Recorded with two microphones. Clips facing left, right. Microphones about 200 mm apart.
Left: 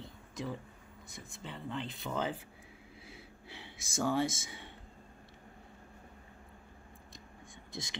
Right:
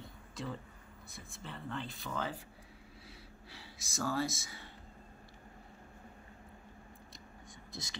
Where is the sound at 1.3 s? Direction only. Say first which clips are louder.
Left 2 dB; 15° left (ahead or behind).